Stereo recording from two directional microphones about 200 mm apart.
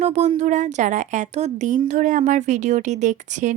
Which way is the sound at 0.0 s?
35° right (ahead or behind).